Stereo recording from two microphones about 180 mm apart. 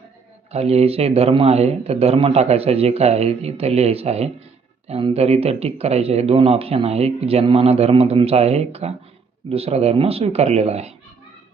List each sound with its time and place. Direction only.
0.5 s speech: 35° right (ahead or behind)